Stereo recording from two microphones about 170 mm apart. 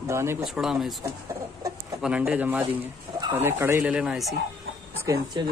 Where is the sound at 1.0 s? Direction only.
20° right (ahead or behind).